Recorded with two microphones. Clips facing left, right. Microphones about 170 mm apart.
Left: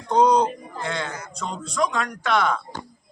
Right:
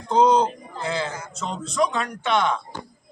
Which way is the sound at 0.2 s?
25° right (ahead or behind).